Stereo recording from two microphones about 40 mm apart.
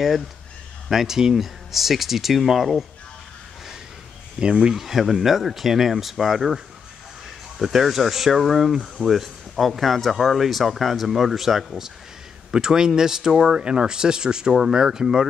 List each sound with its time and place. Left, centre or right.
0.8 s speech: centre
4.6 s speech: centre
12.4 s speech: centre